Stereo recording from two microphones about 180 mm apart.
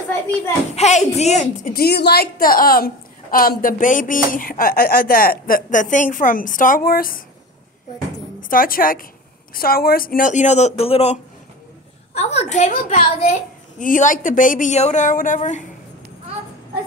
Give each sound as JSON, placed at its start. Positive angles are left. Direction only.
{"t": 0.7, "sound": "a woman's voice", "side_deg": 40}
{"t": 8.4, "sound": "a woman's voice", "side_deg": 50}